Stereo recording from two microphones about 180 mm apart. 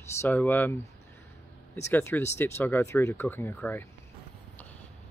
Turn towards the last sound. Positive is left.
turn(degrees=10)  # may be behind; listen again after turning